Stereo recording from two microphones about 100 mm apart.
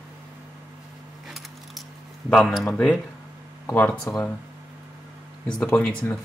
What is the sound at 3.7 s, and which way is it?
Speech, 20° left (ahead or behind).